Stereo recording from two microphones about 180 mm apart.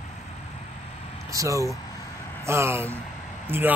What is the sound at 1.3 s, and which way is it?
Speech, 20° right (ahead or behind).